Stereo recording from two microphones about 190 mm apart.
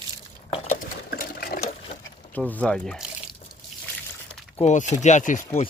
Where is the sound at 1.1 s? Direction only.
50° left (ahead or behind).